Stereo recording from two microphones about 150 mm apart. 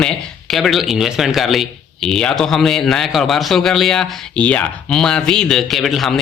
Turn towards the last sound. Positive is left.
turn(degrees=0)  # may be behind; listen again after turning